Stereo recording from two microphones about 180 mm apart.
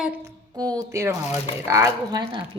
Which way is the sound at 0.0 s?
10° right (ahead or behind).